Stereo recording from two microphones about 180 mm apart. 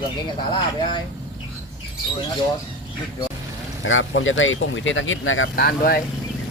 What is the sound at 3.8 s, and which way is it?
Speech, 90° left.